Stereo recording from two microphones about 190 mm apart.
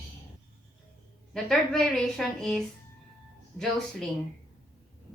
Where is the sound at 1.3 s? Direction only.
Centre (ahead or behind).